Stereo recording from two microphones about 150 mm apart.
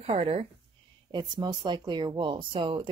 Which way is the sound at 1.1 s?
30° right (ahead or behind).